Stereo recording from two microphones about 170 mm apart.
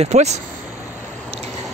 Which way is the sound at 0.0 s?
40° right (ahead or behind).